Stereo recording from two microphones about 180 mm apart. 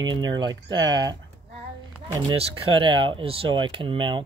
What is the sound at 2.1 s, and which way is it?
Speech, 30° right (ahead or behind).